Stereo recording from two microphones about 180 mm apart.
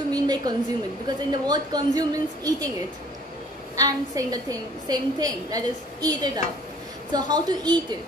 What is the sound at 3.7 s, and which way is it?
A woman's voice, 20° right (ahead or behind).